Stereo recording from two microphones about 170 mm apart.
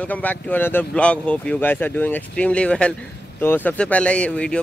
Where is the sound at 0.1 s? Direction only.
10° left (ahead or behind).